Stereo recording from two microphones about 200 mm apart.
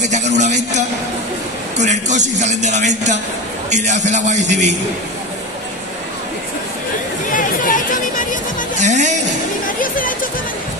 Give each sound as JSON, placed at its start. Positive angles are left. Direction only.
{"t": 0.0, "sound": "a man's voice", "side_deg": -35}
{"t": 7.2, "sound": "chatter", "side_deg": 40}
{"t": 8.8, "sound": "music", "side_deg": -35}
{"t": 9.8, "sound": "music", "side_deg": 45}